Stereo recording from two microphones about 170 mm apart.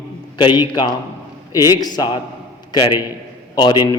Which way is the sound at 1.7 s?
25° left (ahead or behind).